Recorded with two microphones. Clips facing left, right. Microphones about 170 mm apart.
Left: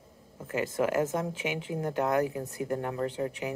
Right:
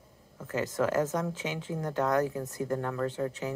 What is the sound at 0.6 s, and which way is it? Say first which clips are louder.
Speech: even; 10° left (ahead or behind).